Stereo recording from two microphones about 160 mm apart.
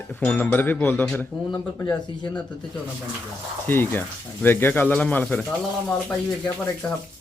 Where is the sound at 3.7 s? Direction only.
15° left (ahead or behind).